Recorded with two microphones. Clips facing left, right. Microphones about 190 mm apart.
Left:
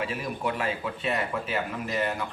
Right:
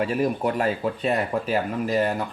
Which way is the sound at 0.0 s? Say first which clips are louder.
Right 7 dB; 40° right (ahead or behind).